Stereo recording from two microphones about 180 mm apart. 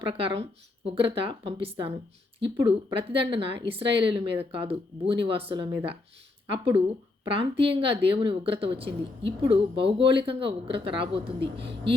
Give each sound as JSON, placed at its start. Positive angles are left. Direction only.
{"t": 0.0, "sound": "a woman's voice", "side_deg": -30}
{"t": 7.3, "sound": "a woman's voice", "side_deg": -30}